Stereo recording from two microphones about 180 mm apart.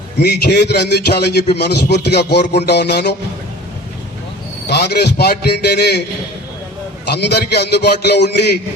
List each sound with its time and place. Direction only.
0.2 s a man's voice: 65° left (ahead or behind)
4.6 s a man's voice: 65° left (ahead or behind)
7.0 s a man's voice: 65° left (ahead or behind)